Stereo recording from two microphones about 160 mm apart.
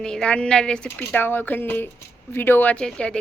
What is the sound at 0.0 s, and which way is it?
Speech, 5° left (ahead or behind).